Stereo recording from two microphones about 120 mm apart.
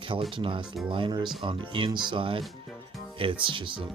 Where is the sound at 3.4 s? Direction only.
45° right (ahead or behind).